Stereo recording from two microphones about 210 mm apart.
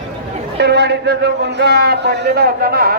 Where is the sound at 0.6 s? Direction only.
55° right (ahead or behind).